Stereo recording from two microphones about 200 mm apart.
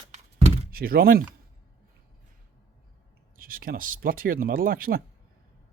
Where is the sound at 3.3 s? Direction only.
45° right (ahead or behind).